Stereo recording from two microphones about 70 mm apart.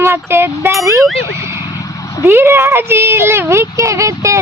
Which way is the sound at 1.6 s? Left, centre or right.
Left.